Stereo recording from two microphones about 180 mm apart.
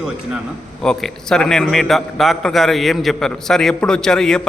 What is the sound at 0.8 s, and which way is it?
A man's voice, 5° left (ahead or behind).